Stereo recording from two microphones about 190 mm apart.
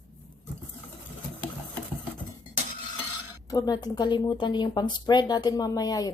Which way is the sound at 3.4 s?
20° left (ahead or behind).